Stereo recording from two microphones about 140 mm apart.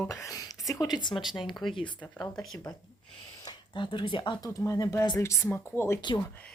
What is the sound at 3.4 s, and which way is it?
Speech, 35° left (ahead or behind).